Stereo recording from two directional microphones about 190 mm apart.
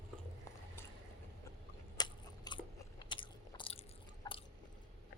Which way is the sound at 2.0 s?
20° left (ahead or behind).